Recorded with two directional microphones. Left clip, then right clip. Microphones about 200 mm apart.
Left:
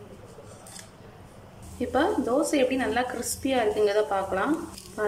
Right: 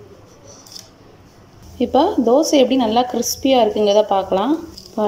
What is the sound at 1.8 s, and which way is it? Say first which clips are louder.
A woman's voice: right 9 dB; 15° right (ahead or behind).